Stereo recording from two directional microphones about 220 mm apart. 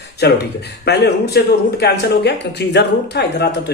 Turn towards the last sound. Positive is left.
turn(degrees=50)  # may be behind; listen again after turning